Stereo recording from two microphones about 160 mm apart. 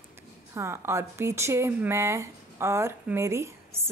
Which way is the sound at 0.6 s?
15° right (ahead or behind).